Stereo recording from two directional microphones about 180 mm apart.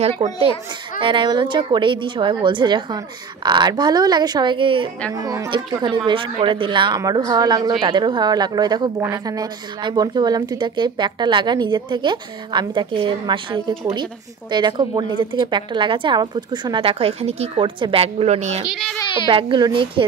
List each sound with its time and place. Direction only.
0.2 s a woman's voice: 30° right (ahead or behind)
18.7 s a child's voice: centre (ahead or behind)
19.2 s a woman's voice: 25° right (ahead or behind)